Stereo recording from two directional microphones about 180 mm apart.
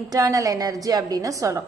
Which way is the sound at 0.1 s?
20° right (ahead or behind).